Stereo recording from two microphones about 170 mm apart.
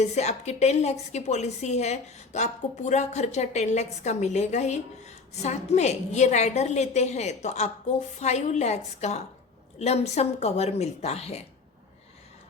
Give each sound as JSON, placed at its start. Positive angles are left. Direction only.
{"t": 0.0, "sound": "a woman's voice", "side_deg": 40}